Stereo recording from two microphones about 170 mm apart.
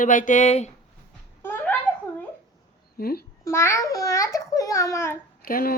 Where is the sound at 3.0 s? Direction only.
60° left (ahead or behind).